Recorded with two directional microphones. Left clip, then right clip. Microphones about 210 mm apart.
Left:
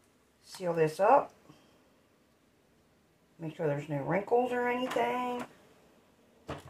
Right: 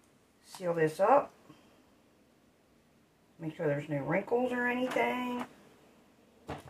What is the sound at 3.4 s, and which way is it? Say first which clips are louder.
Speech: even; 10° right (ahead or behind).